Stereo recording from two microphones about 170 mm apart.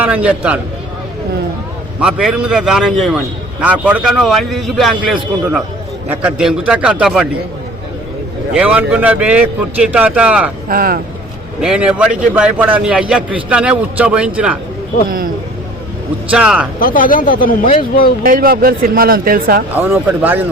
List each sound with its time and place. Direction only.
0.0 s a man's voice: 10° right (ahead or behind)
2.0 s a man's voice: 5° right (ahead or behind)
8.5 s a man's voice: 5° right (ahead or behind)
10.7 s speech: 60° right (ahead or behind)
11.6 s a man's voice: 5° right (ahead or behind)
16.3 s a man's voice: 5° right (ahead or behind)
16.8 s a man's voice: 55° left (ahead or behind)
18.2 s speech: 60° right (ahead or behind)
19.7 s a man's voice: 10° right (ahead or behind)